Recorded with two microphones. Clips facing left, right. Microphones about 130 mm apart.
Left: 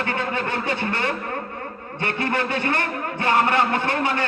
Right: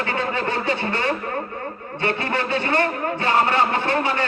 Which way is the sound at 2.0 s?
50° left (ahead or behind).